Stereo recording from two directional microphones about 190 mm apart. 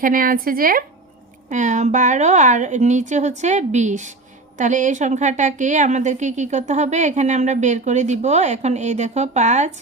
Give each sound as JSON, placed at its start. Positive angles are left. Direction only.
{"t": 0.0, "sound": "a woman's voice", "side_deg": -50}